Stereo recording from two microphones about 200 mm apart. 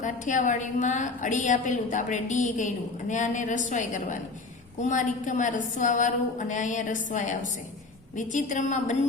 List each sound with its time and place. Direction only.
0.0 s a woman's voice: 40° left (ahead or behind)